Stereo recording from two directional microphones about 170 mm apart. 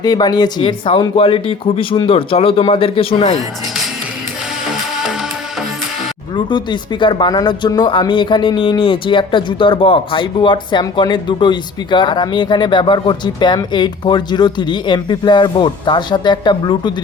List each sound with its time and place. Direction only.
0.0 s speech: 25° left (ahead or behind)
6.3 s speech: 25° left (ahead or behind)